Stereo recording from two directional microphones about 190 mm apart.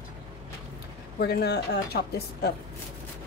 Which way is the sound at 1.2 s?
60° left (ahead or behind).